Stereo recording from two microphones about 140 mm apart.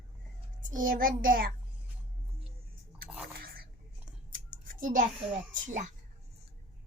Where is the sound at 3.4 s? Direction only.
90° right.